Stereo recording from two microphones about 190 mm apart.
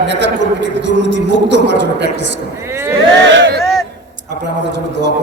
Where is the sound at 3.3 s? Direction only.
70° right (ahead or behind).